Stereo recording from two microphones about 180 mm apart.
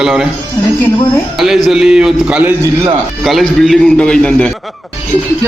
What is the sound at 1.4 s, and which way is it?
A man's voice, centre (ahead or behind).